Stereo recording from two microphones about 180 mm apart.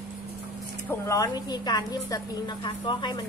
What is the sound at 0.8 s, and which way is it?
A woman's voice, 15° left (ahead or behind).